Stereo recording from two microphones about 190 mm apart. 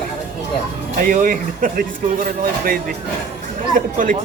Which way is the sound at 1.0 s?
45° right (ahead or behind).